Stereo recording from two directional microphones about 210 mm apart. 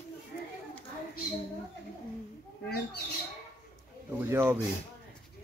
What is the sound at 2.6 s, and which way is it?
Bird, 50° left (ahead or behind).